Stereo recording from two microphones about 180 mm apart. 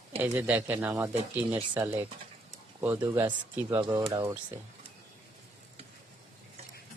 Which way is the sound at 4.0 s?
30° right (ahead or behind).